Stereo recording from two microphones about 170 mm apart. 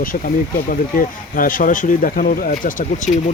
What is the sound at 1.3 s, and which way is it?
Speech, 55° left (ahead or behind).